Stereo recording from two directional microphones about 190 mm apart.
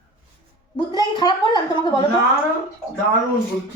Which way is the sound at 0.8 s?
25° left (ahead or behind).